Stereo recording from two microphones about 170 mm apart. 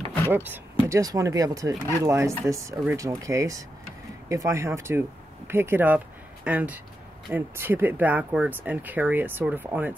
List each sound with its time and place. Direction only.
0.3 s speech: 10° right (ahead or behind)